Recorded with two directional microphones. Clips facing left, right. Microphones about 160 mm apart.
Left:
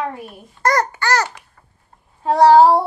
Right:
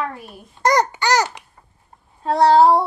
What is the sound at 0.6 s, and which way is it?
Babbling, 20° right (ahead or behind).